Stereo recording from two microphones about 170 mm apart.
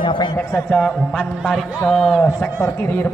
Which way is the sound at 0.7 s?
5° left (ahead or behind).